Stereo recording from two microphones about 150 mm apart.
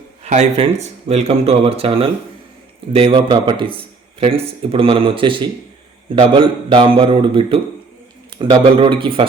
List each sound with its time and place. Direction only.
0.3 s speech: 45° right (ahead or behind)